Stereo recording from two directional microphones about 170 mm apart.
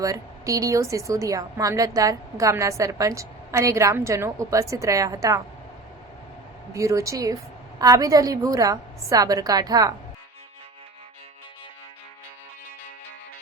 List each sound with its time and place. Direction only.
0.0 s a woman's voice: 20° right (ahead or behind)
6.7 s a woman's voice: 20° right (ahead or behind)